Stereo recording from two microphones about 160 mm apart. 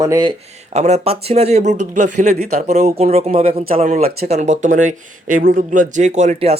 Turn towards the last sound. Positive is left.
turn(degrees=-40)  # may be behind; listen again after turning